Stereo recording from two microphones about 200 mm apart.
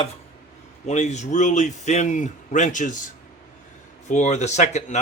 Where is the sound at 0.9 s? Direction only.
35° left (ahead or behind).